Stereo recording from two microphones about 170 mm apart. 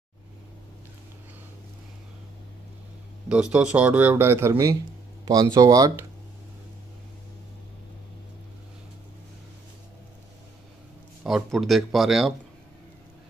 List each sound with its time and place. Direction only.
3.3 s speech: 5° right (ahead or behind); by 6.0 s 20° right (ahead or behind)
11.2 s speech: centre (ahead or behind)